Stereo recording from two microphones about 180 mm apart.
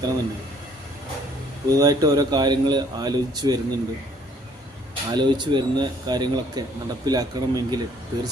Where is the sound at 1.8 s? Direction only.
20° right (ahead or behind).